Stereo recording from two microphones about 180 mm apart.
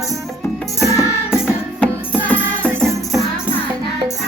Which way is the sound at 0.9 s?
15° left (ahead or behind).